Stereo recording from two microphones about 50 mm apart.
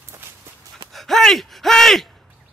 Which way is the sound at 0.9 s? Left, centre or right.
Centre.